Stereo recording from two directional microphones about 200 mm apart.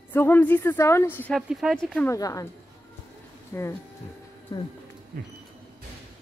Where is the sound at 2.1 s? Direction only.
15° left (ahead or behind).